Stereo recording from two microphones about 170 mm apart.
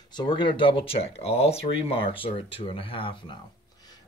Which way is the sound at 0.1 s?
30° left (ahead or behind).